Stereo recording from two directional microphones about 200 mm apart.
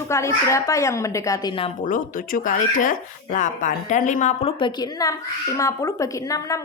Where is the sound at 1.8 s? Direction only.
40° left (ahead or behind); by 6.6 s 15° left (ahead or behind).